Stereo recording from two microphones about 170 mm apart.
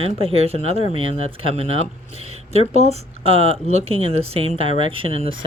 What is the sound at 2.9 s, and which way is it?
Speech, 35° right (ahead or behind).